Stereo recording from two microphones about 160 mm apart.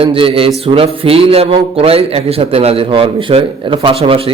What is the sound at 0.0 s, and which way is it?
Speech, 35° right (ahead or behind).